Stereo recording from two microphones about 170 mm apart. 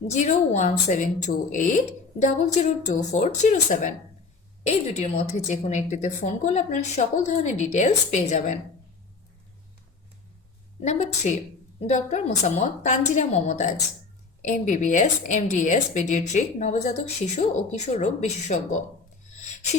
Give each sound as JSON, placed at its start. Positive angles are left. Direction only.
{"t": 0.1, "sound": "a woman's voice", "side_deg": 45}
{"t": 10.8, "sound": "a woman's voice", "side_deg": 40}